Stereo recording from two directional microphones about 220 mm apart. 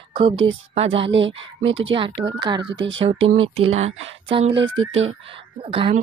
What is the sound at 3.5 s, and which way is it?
A woman's voice, 30° right (ahead or behind).